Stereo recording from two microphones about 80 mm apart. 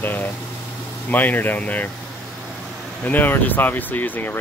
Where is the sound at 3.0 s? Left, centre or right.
Left.